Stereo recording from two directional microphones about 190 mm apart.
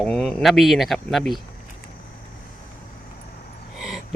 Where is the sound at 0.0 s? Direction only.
Centre (ahead or behind).